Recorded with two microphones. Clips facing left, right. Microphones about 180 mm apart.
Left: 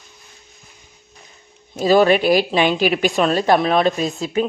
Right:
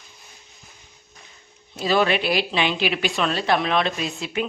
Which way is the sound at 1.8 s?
40° left (ahead or behind).